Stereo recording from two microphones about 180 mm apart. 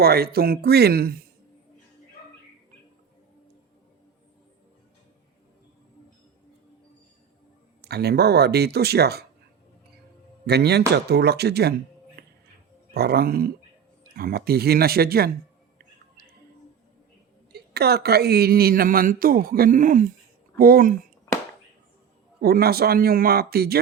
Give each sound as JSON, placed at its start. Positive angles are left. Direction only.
{"t": 0.0, "sound": "a woman's voice", "side_deg": -60}
{"t": 7.9, "sound": "a woman's voice", "side_deg": -65}
{"t": 10.4, "sound": "a woman's voice", "side_deg": -65}
{"t": 12.9, "sound": "a woman's voice", "side_deg": -60}
{"t": 17.5, "sound": "a woman's voice", "side_deg": -60}
{"t": 22.4, "sound": "a woman's voice", "side_deg": -55}